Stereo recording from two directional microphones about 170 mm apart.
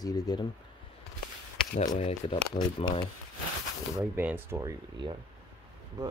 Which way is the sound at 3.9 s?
10° right (ahead or behind).